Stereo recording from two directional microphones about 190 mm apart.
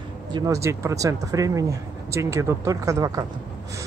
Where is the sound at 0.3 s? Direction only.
20° right (ahead or behind).